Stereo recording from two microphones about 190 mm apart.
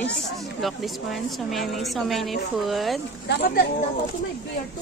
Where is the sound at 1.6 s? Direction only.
Centre (ahead or behind).